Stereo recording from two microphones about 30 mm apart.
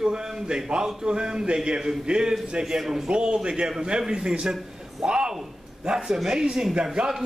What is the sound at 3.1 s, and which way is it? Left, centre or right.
A man's voice, right.